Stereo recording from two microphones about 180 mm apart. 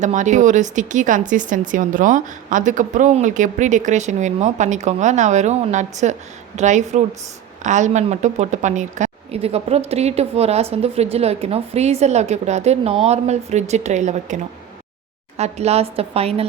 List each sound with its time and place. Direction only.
0.0 s a woman's voice: 45° right (ahead or behind)